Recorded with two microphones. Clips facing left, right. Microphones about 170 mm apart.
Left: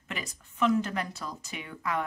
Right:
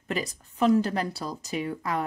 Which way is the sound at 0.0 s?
35° right (ahead or behind).